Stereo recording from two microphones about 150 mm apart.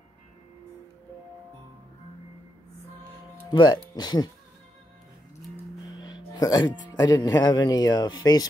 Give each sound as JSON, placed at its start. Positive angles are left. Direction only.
{"t": 3.5, "sound": "speech", "side_deg": 30}
{"t": 5.9, "sound": "music", "side_deg": 25}
{"t": 6.9, "sound": "speech", "side_deg": 25}